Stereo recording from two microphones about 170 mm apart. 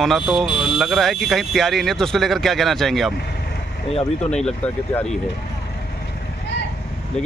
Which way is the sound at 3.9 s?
35° left (ahead or behind).